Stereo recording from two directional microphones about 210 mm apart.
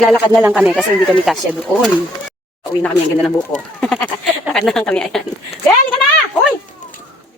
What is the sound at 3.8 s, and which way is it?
Speech, 5° left (ahead or behind).